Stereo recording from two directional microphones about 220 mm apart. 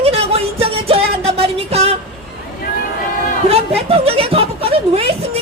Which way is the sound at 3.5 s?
25° right (ahead or behind).